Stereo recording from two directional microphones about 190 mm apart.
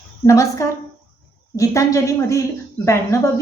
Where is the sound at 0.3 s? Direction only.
15° left (ahead or behind).